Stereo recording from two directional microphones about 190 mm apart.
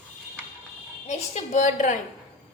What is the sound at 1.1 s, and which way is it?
Speech, 40° left (ahead or behind).